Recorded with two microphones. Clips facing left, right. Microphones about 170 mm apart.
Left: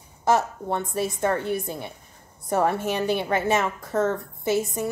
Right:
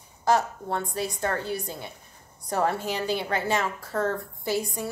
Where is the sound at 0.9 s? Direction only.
25° left (ahead or behind).